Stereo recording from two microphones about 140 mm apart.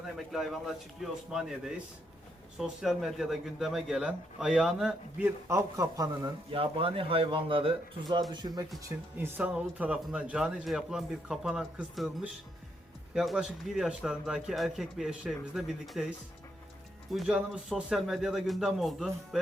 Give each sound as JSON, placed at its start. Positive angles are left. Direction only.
{"t": 0.3, "sound": "speech", "side_deg": 0}
{"t": 5.5, "sound": "speech", "side_deg": -20}
{"t": 6.5, "sound": "speech", "side_deg": -40}
{"t": 9.1, "sound": "speech", "side_deg": -10}